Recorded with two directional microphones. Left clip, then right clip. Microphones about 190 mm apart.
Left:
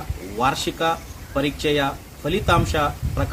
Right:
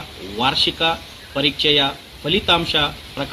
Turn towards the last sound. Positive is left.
turn(degrees=15)  # may be behind; listen again after turning